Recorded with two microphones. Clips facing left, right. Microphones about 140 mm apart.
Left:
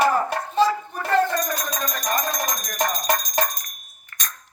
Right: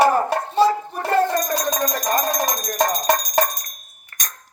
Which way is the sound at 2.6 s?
40° right (ahead or behind).